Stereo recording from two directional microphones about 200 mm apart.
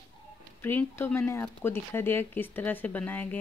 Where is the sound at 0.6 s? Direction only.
10° left (ahead or behind).